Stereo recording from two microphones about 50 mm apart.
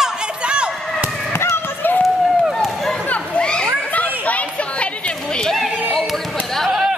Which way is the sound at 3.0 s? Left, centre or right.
Left.